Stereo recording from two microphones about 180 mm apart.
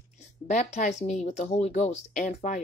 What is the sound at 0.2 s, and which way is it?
A woman's voice, 40° left (ahead or behind).